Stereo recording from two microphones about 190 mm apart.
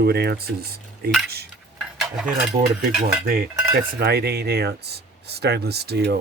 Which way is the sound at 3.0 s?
50° right (ahead or behind).